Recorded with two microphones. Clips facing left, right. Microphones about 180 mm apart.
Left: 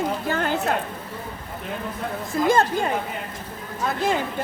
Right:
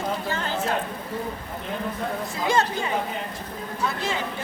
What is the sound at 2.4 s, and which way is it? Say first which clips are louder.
Speech: left 4 dB; 50° left (ahead or behind).